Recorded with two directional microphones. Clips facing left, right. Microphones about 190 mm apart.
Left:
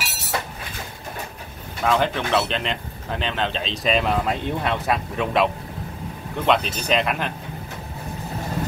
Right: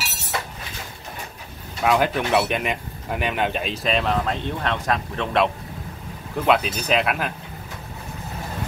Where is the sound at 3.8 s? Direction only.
5° left (ahead or behind).